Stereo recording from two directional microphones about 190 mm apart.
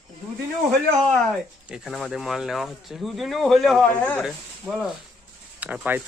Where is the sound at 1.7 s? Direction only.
Centre (ahead or behind).